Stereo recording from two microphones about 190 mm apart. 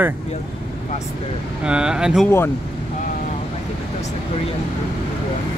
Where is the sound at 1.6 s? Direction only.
5° right (ahead or behind).